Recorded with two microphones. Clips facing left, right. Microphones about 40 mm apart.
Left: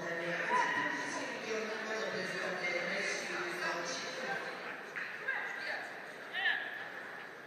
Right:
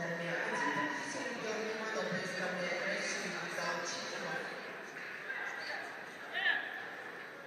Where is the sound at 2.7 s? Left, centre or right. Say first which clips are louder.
Left 1 dB; centre.